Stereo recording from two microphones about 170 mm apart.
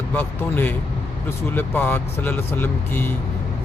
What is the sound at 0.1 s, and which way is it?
Speech, 10° left (ahead or behind).